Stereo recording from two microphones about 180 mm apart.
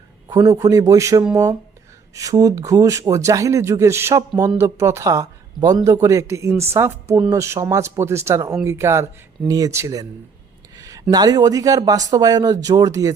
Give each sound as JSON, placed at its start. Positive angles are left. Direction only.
{"t": 0.3, "sound": "speech", "side_deg": -20}
{"t": 10.8, "sound": "a sound", "side_deg": -20}
{"t": 11.1, "sound": "speech", "side_deg": -20}